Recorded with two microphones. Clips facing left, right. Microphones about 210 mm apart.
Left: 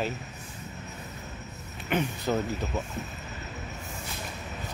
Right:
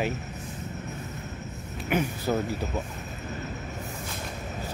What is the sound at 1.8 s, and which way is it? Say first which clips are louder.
Speech: right 1 dB; 10° right (ahead or behind).